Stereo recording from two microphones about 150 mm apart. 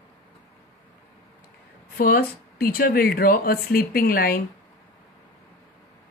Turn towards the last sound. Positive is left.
turn(degrees=80)